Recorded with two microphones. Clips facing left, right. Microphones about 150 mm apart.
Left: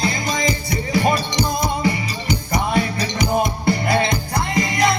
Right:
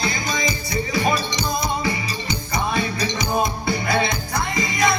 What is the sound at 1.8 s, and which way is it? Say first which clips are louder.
Music: left 4 dB; 55° left (ahead or behind).